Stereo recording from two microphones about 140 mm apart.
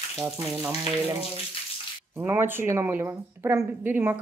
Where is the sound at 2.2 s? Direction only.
15° right (ahead or behind).